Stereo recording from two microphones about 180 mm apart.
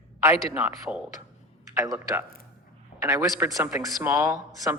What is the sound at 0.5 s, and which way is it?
Speech, 10° right (ahead or behind).